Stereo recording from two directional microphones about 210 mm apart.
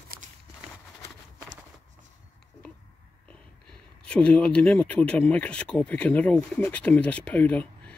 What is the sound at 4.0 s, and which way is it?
Speech, 5° left (ahead or behind).